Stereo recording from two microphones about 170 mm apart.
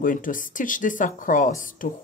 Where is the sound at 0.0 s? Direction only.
50° left (ahead or behind).